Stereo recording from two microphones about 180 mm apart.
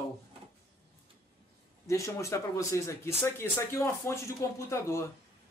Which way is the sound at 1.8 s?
15° left (ahead or behind).